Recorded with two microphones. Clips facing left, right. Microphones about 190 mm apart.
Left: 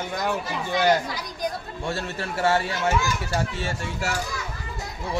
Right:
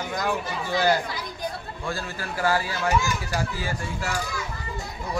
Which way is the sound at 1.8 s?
25° left (ahead or behind).